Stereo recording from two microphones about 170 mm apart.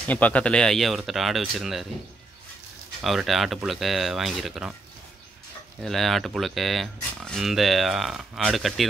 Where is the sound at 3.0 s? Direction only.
Centre (ahead or behind).